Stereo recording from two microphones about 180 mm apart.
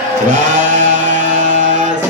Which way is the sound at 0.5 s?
45° right (ahead or behind).